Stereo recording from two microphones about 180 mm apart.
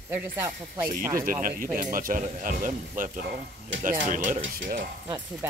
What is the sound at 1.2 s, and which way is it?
Speech, 50° right (ahead or behind).